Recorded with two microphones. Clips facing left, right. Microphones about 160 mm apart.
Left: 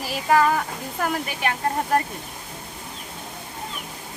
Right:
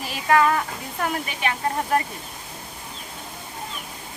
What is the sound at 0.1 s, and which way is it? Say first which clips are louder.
Speech: even; centre (ahead or behind).